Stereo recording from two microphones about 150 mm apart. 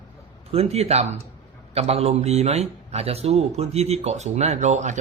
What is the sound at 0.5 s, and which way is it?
A man's voice, 45° right (ahead or behind).